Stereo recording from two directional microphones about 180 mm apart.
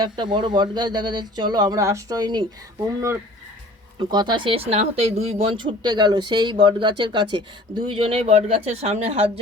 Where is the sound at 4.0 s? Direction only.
25° right (ahead or behind).